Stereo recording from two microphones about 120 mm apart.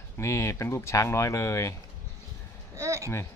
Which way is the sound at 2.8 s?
25° right (ahead or behind).